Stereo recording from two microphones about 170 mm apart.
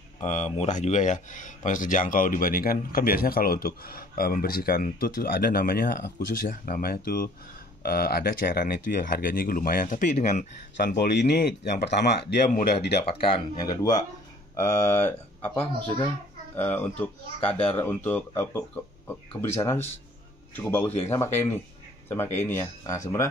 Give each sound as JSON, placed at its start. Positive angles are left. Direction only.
{"t": 0.2, "sound": "speech", "side_deg": 45}
{"t": 13.0, "sound": "speech", "side_deg": 35}